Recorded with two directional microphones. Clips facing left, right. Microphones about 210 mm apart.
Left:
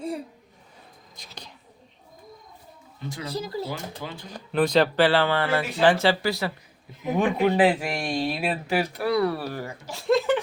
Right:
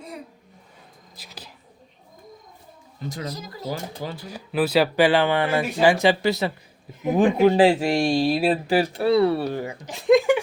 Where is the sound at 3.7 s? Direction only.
40° right (ahead or behind).